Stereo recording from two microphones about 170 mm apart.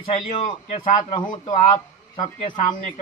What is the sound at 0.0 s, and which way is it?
A man's voice, 35° left (ahead or behind).